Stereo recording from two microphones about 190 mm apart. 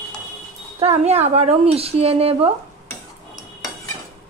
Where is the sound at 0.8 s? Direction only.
35° right (ahead or behind).